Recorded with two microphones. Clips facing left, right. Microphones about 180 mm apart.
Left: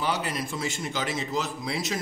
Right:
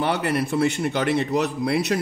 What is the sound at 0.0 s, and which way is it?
A man's voice, 60° right (ahead or behind).